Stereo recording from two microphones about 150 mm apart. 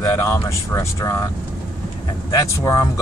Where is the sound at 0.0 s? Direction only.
20° left (ahead or behind).